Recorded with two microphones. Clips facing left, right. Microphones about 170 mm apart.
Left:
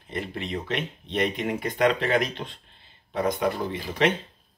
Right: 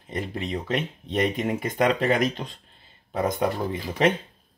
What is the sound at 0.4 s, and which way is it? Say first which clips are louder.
Speech: right 3 dB; 40° right (ahead or behind).